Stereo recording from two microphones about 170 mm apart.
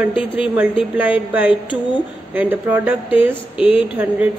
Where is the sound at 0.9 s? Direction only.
10° right (ahead or behind).